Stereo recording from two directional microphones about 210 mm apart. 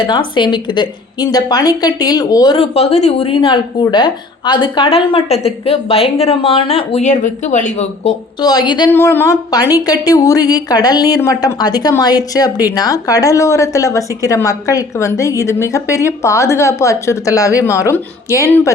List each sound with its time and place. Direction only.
0.1 s a woman's voice: 20° left (ahead or behind)
8.4 s a woman's voice: 20° left (ahead or behind)
8.9 s speech: 10° left (ahead or behind)